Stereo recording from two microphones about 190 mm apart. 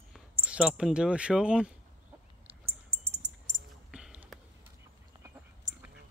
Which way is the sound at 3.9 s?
5° right (ahead or behind).